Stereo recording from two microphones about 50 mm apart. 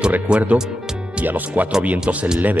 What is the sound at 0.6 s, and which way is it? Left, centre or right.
Music, centre.